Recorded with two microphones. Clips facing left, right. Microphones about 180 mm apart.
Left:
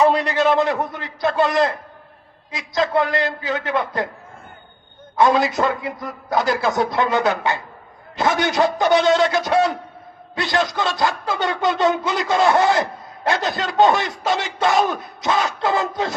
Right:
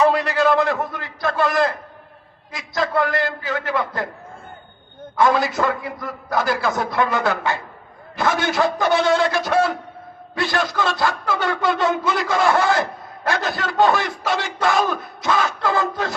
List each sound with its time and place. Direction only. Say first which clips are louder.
0.0 s speech: left 1 dB; 20° left (ahead or behind)
5.1 s speech: left 1 dB; 20° left (ahead or behind)